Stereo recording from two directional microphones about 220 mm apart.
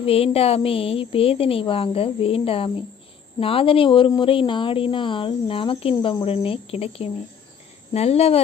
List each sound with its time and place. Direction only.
0.0 s a woman's voice: 25° left (ahead or behind)